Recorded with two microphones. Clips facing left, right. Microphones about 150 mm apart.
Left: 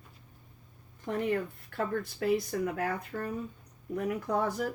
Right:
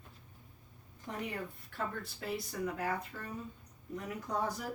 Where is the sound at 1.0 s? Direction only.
60° left (ahead or behind).